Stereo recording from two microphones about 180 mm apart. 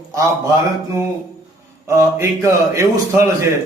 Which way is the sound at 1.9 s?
15° right (ahead or behind).